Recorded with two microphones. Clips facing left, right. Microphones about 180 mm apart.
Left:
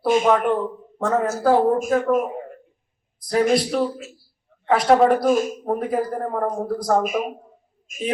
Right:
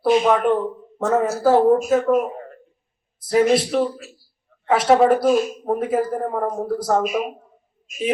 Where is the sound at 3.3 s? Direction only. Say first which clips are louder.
Right 2 dB; 5° right (ahead or behind).